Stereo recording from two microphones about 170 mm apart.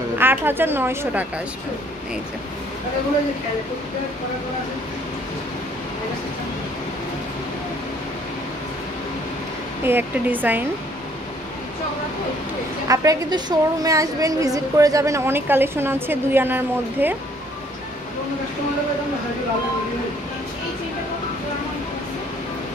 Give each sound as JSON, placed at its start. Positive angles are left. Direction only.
{"t": 0.2, "sound": "a woman's voice", "side_deg": -10}
{"t": 9.8, "sound": "a woman's voice", "side_deg": -10}
{"t": 12.8, "sound": "a woman's voice", "side_deg": -20}